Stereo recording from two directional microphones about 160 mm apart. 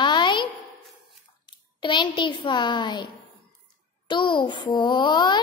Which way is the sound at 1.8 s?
30° left (ahead or behind).